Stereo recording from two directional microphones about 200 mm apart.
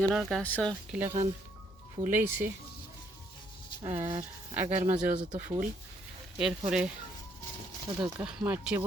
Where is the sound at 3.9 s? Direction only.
10° right (ahead or behind).